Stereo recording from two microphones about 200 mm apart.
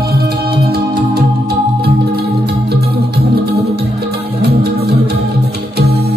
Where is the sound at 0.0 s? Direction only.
50° right (ahead or behind).